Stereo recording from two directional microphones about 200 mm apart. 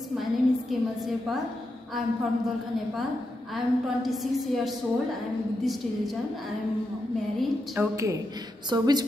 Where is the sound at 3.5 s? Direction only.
Centre (ahead or behind).